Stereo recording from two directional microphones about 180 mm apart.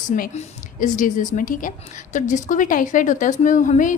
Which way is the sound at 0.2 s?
45° left (ahead or behind).